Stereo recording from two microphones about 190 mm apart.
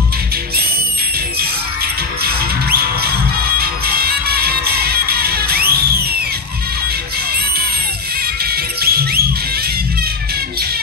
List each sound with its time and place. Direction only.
2.2 s music: 55° right (ahead or behind)
8.5 s music: 55° right (ahead or behind)